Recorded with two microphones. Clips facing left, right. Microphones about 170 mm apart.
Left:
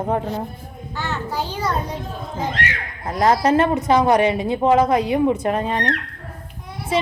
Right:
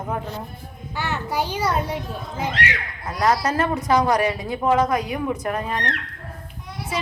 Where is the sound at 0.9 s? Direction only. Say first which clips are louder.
Right 1 dB; 10° right (ahead or behind).